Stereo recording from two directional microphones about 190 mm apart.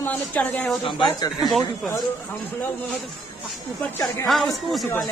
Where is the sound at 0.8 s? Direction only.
25° left (ahead or behind).